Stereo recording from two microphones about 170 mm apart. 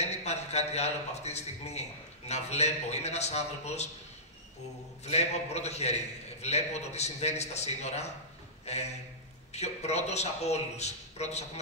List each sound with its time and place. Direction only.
0.0 s a man's voice: 40° left (ahead or behind)
5.0 s a man's voice: 40° left (ahead or behind)